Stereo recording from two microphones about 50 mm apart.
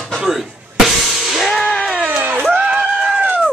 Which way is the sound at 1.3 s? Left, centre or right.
Centre.